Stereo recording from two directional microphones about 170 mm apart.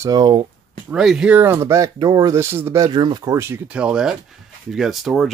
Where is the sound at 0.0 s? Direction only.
25° right (ahead or behind).